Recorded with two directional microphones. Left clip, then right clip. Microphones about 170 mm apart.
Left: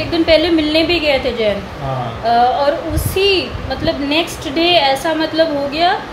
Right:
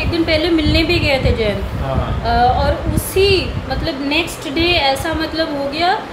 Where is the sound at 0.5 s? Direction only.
10° left (ahead or behind).